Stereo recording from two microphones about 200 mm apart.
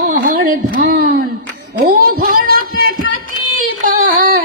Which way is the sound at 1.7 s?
50° right (ahead or behind).